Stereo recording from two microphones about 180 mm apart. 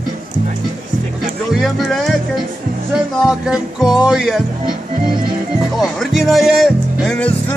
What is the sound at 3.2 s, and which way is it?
Speech, 5° right (ahead or behind).